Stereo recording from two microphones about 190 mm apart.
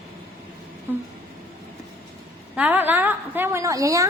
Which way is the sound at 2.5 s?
10° right (ahead or behind).